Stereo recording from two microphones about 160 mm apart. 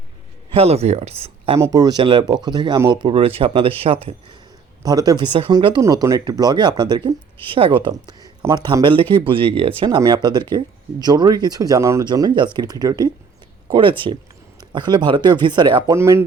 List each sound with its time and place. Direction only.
0.5 s speech: 40° right (ahead or behind)
1.5 s speech: 20° right (ahead or behind)
3.0 s speech: 35° right (ahead or behind)
4.8 s speech: 25° right (ahead or behind)
16.0 s speech: 15° right (ahead or behind)